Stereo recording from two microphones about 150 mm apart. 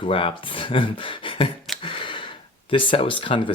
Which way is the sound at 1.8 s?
35° left (ahead or behind).